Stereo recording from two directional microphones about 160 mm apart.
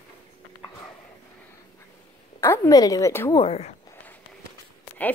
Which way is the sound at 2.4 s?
15° left (ahead or behind).